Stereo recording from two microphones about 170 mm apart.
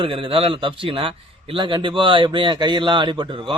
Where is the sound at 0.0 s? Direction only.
30° right (ahead or behind).